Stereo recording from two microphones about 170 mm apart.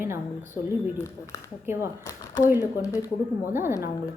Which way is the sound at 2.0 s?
20° left (ahead or behind).